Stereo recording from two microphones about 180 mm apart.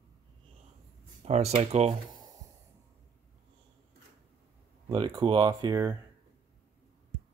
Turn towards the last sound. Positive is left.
turn(degrees=-20)  # may be behind; listen again after turning